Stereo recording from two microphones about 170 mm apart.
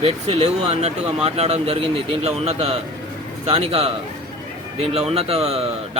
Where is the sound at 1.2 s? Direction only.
35° right (ahead or behind).